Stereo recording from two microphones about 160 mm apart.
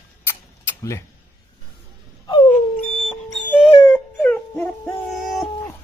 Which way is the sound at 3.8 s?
10° left (ahead or behind).